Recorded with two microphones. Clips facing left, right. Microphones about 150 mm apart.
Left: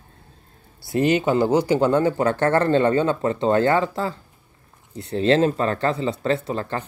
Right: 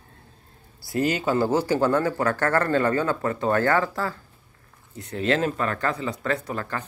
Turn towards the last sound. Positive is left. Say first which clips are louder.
# left 4 dB
turn(degrees=25)  # may be behind; listen again after turning